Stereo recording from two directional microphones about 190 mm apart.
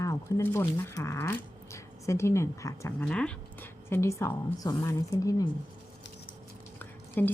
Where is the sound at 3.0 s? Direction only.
5° left (ahead or behind).